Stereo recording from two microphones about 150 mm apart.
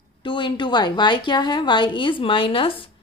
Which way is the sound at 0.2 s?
35° left (ahead or behind).